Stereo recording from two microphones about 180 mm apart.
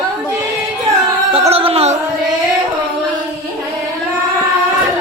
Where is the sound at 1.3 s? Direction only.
30° right (ahead or behind).